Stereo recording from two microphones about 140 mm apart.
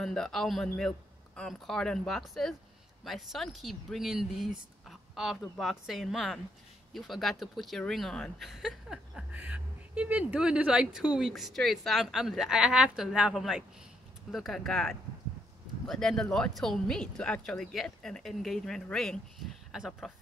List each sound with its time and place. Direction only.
0.0 s speech: 5° left (ahead or behind)